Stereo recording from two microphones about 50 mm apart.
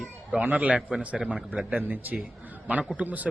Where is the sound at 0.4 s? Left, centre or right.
Right.